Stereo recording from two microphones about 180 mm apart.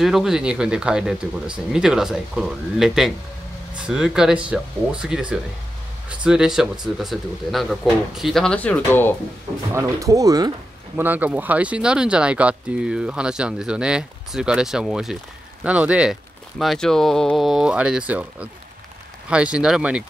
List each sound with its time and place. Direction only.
0.0 s speech: centre (ahead or behind)
9.8 s speech: 15° right (ahead or behind)
11.0 s speech: 10° right (ahead or behind)